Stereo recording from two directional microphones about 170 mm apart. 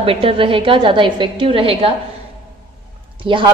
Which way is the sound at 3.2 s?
30° right (ahead or behind).